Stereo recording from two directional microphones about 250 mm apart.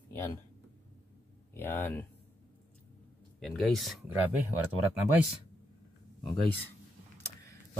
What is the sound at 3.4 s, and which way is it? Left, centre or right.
Speech, centre.